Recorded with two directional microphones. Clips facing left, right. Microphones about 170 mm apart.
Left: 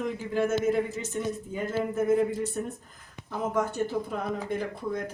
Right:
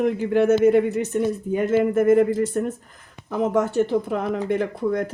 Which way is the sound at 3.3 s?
75° right (ahead or behind).